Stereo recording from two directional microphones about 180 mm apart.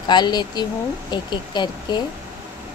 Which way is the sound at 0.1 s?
25° left (ahead or behind).